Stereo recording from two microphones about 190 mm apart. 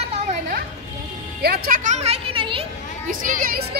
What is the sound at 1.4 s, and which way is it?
Speech, 55° right (ahead or behind).